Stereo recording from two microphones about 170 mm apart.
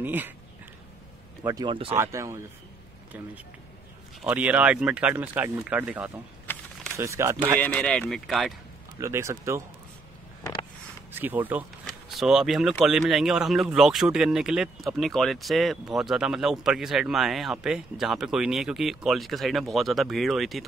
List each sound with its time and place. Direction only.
0.0 s speech: 10° right (ahead or behind)
1.4 s speech: 25° right (ahead or behind)
2.0 s speech: 20° right (ahead or behind)
4.2 s speech: 10° right (ahead or behind)
6.4 s a sound: 10° left (ahead or behind)
7.0 s speech: 15° right (ahead or behind)
7.6 s speech: 5° left (ahead or behind)
9.0 s speech: 15° right (ahead or behind)
11.1 s speech: 10° right (ahead or behind)